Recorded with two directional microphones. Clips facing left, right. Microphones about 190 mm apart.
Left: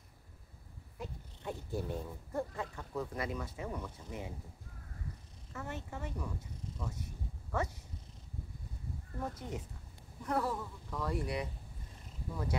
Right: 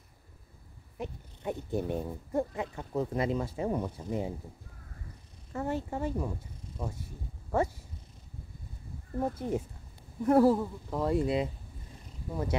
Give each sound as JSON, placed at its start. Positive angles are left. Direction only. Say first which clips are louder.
{"t": 0.9, "sound": "speech", "louder": "right 6 dB", "side_deg": -20}
{"t": 5.5, "sound": "speech", "louder": "right 10 dB", "side_deg": -30}
{"t": 9.2, "sound": "speech", "louder": "right 10 dB", "side_deg": -30}